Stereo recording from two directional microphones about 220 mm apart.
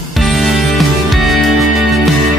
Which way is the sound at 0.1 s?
Centre (ahead or behind).